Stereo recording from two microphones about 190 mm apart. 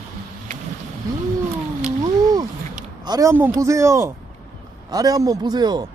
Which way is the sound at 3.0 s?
20° right (ahead or behind).